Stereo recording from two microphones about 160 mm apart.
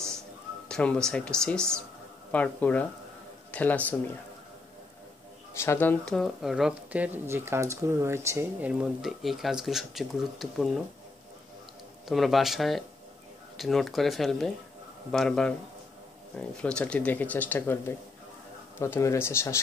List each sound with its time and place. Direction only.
0.7 s speech: 5° left (ahead or behind)
5.6 s speech: 15° left (ahead or behind)
12.1 s speech: centre (ahead or behind); by 19.6 s 15° left (ahead or behind)